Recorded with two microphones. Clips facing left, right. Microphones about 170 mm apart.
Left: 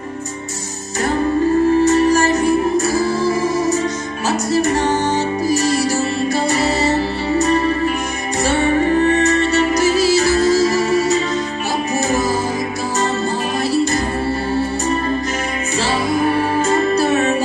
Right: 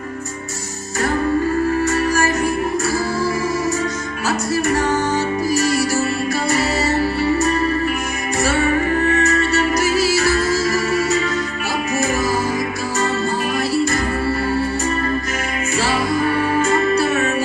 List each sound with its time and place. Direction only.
1.9 s music: 20° left (ahead or behind)